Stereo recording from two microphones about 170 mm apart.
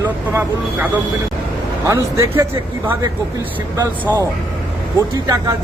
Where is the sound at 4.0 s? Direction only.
10° right (ahead or behind).